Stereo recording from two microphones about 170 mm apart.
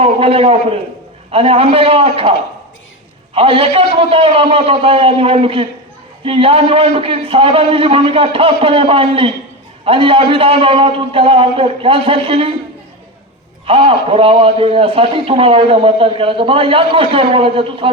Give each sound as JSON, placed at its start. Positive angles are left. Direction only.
{"t": 0.0, "sound": "a man's voice", "side_deg": -35}
{"t": 3.3, "sound": "a man's voice", "side_deg": -35}
{"t": 13.7, "sound": "a man's voice", "side_deg": -35}